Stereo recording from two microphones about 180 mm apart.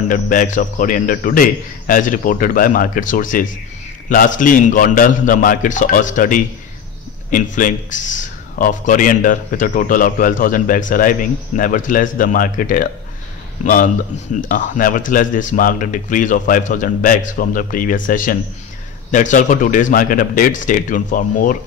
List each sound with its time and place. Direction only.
0.1 s speech: 50° left (ahead or behind)